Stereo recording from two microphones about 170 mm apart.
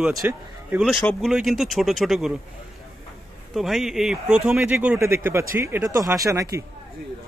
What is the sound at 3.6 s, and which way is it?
Speech, centre (ahead or behind).